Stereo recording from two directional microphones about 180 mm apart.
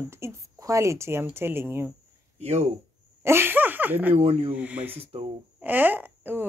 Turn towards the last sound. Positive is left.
turn(degrees=-10)  # may be behind; listen again after turning